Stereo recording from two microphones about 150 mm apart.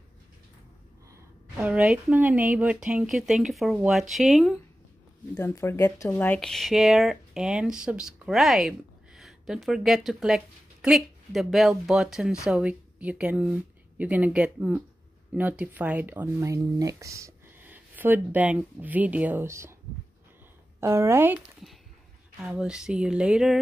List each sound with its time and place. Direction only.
1.6 s speech: 5° right (ahead or behind)
5.3 s speech: 15° left (ahead or behind); by 19.7 s 20° right (ahead or behind)
20.8 s speech: 15° right (ahead or behind)
22.4 s speech: 5° right (ahead or behind)